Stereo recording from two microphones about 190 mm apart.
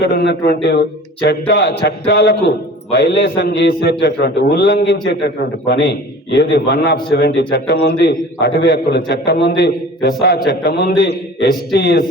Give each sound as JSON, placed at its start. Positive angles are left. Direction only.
{"t": 0.0, "sound": "a man's voice", "side_deg": 65}